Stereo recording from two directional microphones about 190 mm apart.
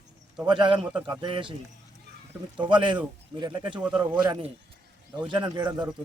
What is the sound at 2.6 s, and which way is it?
A man's voice, 25° right (ahead or behind).